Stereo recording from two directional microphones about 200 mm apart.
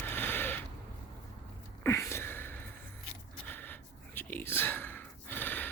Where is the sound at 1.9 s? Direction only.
15° left (ahead or behind).